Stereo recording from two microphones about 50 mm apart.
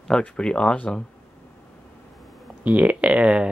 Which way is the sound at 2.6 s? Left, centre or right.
Right.